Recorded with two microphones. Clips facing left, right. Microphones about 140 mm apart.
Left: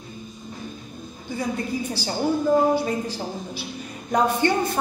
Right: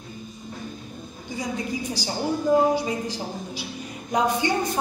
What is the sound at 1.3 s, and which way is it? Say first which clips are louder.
A woman's voice: left 2 dB; 15° right (ahead or behind).